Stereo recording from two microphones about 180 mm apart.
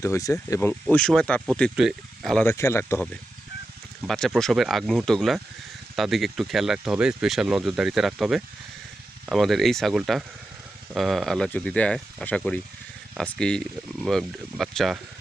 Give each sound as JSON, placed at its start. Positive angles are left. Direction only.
{"t": 0.0, "sound": "speech", "side_deg": 15}
{"t": 0.9, "sound": "speech", "side_deg": 5}
{"t": 2.4, "sound": "speech", "side_deg": 15}
{"t": 4.0, "sound": "speech", "side_deg": 0}